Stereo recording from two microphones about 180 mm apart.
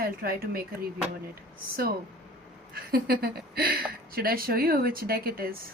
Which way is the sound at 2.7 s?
55° right (ahead or behind).